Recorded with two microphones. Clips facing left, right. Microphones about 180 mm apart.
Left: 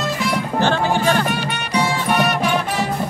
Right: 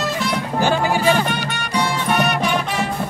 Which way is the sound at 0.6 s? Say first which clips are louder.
Even; 10° right (ahead or behind).